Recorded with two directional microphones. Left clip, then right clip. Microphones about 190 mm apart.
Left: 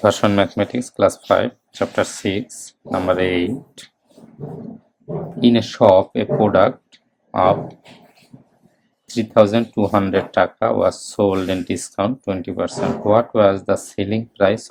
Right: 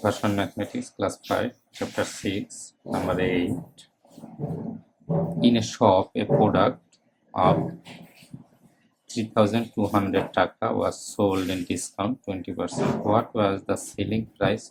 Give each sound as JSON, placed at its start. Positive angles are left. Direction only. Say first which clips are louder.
{"t": 0.0, "sound": "speech", "louder": "left 10 dB", "side_deg": 40}
{"t": 5.4, "sound": "speech", "louder": "left 8 dB", "side_deg": 25}
{"t": 9.0, "sound": "speech", "louder": "left 9 dB", "side_deg": 30}